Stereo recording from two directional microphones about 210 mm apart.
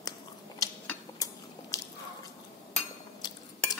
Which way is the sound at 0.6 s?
15° left (ahead or behind).